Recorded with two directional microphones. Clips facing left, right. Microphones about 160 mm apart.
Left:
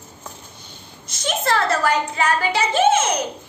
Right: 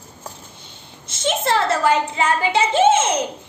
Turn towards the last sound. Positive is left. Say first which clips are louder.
# right 2 dB
turn(degrees=-25)  # may be behind; listen again after turning